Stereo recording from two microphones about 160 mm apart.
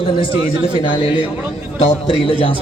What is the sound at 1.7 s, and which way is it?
Speech, 35° left (ahead or behind).